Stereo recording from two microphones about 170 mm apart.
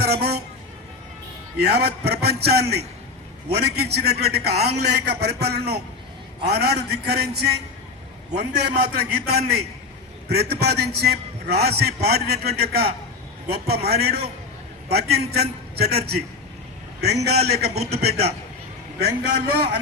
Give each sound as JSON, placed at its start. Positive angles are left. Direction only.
{"t": 0.0, "sound": "a sound", "side_deg": -70}
{"t": 1.5, "sound": "a man's voice", "side_deg": -75}
{"t": 18.9, "sound": "a man's voice", "side_deg": -75}